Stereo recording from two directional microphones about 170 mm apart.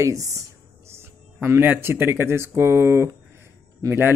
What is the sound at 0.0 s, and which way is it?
Speech, 15° right (ahead or behind).